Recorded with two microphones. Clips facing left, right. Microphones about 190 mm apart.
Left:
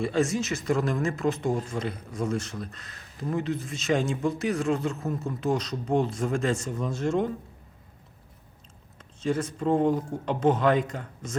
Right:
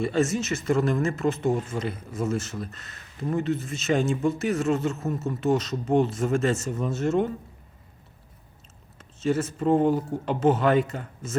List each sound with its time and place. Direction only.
0.0 s speech: centre (ahead or behind)
9.0 s speech: 5° right (ahead or behind)